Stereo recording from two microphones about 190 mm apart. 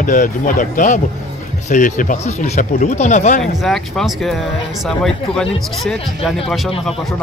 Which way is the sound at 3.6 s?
Centre (ahead or behind).